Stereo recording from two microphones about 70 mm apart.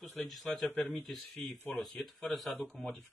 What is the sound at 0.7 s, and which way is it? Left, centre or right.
Speech, left.